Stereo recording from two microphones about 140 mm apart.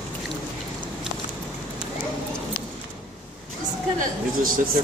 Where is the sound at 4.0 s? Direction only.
80° right.